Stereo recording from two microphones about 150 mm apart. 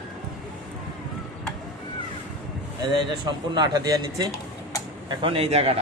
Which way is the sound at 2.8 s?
30° right (ahead or behind).